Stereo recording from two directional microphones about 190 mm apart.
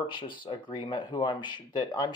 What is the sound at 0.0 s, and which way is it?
Speech, 25° left (ahead or behind).